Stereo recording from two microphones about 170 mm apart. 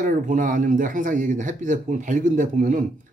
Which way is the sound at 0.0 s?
50° right (ahead or behind).